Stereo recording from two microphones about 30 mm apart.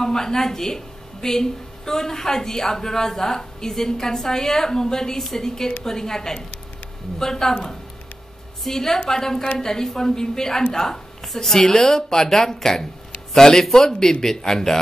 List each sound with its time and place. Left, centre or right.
0.0 s a woman's voice: centre